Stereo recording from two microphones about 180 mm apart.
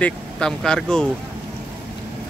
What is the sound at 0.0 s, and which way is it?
Speech, 5° left (ahead or behind).